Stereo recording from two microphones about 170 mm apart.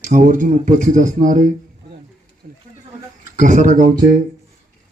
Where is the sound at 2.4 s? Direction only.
55° right (ahead or behind).